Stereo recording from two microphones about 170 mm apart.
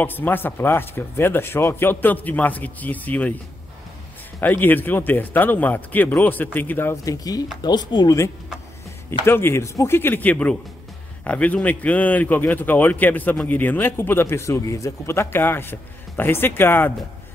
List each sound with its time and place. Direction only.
0.0 s a man's voice: 10° left (ahead or behind)
4.4 s a man's voice: 10° left (ahead or behind)